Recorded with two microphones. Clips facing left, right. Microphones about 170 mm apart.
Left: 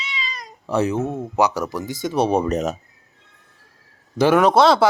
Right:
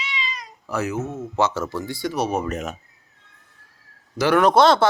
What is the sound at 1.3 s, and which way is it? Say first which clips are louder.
Speech: left 1 dB; 15° left (ahead or behind).